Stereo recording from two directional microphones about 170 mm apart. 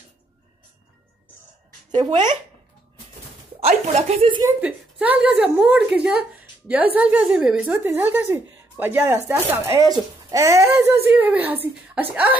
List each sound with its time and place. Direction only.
2.0 s speech: 25° right (ahead or behind)
3.6 s speech: 40° right (ahead or behind)
4.4 s a woman's voice: 10° right (ahead or behind)